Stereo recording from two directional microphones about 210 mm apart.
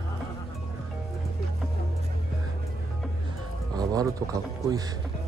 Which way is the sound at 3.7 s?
20° right (ahead or behind).